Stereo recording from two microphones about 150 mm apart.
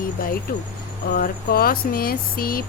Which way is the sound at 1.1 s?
85° left.